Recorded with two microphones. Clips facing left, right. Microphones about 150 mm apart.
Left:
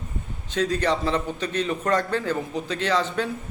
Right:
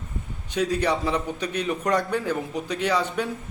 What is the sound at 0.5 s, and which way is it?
A man's voice, 10° right (ahead or behind).